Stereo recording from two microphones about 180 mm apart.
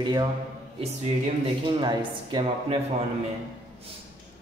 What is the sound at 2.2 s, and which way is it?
Speech, 25° right (ahead or behind).